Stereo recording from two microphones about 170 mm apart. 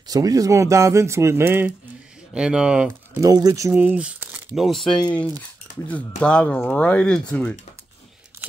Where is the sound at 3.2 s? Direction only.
20° right (ahead or behind); by 7.5 s 5° left (ahead or behind).